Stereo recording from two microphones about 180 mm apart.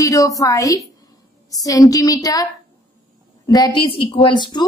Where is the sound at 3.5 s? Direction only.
20° left (ahead or behind).